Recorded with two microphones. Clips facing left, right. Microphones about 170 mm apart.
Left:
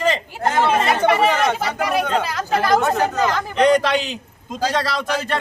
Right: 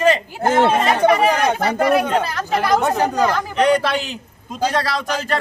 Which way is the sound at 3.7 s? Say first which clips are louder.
Left 1 dB; 15° left (ahead or behind).